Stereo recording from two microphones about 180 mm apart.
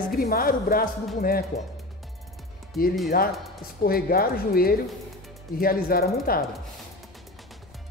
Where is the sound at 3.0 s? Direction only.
55° left (ahead or behind).